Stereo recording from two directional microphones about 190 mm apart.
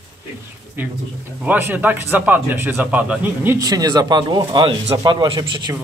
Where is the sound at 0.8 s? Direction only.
10° right (ahead or behind).